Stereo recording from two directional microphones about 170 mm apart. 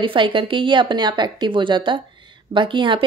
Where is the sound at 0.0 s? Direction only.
30° right (ahead or behind).